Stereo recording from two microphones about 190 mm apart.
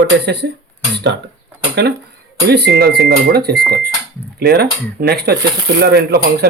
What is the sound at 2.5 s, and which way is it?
Speech, 60° right (ahead or behind).